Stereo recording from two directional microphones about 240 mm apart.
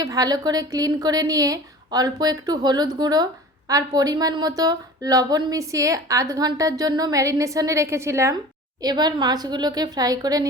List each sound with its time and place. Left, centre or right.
0.0 s a woman's voice: centre